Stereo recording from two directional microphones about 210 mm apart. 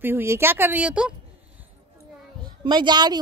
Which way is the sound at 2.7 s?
20° right (ahead or behind).